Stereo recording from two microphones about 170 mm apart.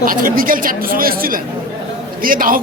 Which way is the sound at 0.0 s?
55° right (ahead or behind).